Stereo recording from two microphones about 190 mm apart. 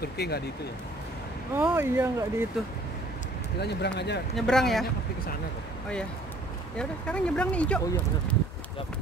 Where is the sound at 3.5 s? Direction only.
60° left (ahead or behind).